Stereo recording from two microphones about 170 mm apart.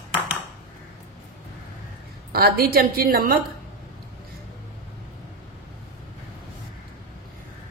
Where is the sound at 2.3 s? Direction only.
65° right (ahead or behind).